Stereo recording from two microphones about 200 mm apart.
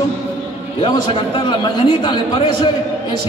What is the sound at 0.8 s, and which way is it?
Speech, 25° left (ahead or behind).